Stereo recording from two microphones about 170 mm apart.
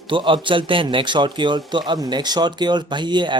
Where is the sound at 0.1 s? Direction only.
30° right (ahead or behind).